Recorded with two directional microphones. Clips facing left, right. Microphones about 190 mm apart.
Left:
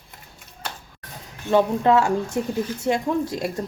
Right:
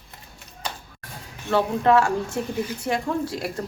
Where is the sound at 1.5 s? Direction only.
20° left (ahead or behind).